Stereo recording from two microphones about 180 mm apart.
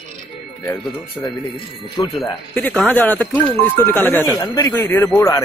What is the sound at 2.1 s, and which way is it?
Speech, 5° left (ahead or behind).